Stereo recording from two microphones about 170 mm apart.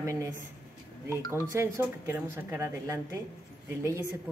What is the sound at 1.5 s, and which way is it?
Speech, 15° right (ahead or behind).